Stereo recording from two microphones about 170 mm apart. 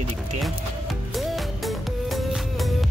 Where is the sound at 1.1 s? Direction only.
Centre (ahead or behind).